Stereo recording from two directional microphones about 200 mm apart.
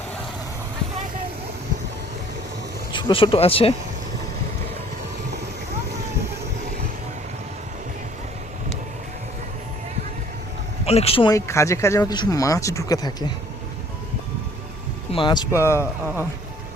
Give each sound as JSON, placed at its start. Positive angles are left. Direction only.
{"t": 2.9, "sound": "speech", "side_deg": 25}
{"t": 10.8, "sound": "speech", "side_deg": 30}
{"t": 15.1, "sound": "speech", "side_deg": 25}